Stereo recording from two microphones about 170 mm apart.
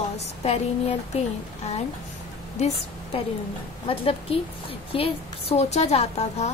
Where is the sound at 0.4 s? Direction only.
40° left (ahead or behind).